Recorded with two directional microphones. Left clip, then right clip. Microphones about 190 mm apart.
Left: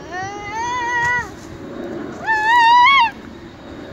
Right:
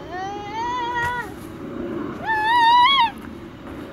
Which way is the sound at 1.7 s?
35° right (ahead or behind).